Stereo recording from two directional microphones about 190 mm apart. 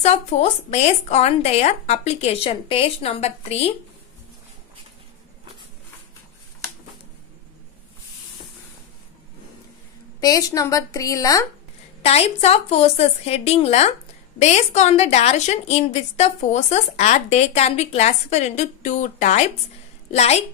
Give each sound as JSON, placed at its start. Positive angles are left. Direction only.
{"t": 0.0, "sound": "a woman's voice", "side_deg": 35}
{"t": 10.2, "sound": "a woman's voice", "side_deg": 20}
{"t": 12.0, "sound": "a woman's voice", "side_deg": 35}